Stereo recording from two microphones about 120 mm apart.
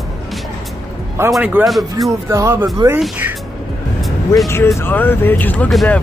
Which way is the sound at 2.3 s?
25° right (ahead or behind).